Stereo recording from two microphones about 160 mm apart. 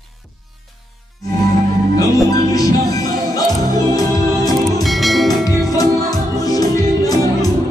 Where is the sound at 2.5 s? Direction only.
20° left (ahead or behind).